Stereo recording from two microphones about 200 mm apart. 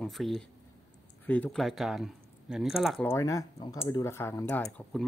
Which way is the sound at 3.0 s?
15° left (ahead or behind).